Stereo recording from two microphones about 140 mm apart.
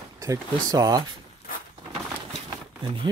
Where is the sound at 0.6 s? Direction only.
25° right (ahead or behind).